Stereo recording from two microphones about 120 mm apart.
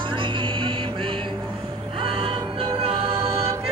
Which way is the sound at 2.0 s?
50° right (ahead or behind).